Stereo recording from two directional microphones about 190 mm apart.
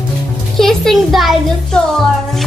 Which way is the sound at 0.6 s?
Centre (ahead or behind).